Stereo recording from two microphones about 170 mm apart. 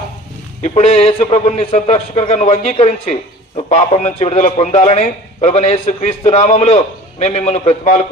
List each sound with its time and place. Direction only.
0.6 s a man's voice: 40° left (ahead or behind)